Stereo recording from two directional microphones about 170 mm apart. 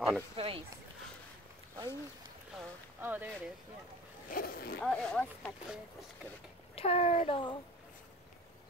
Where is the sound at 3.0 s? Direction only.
10° right (ahead or behind).